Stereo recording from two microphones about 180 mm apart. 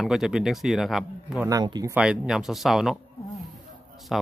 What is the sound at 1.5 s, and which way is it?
Speech, 20° right (ahead or behind).